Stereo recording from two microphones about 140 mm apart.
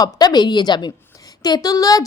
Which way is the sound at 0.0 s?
25° left (ahead or behind).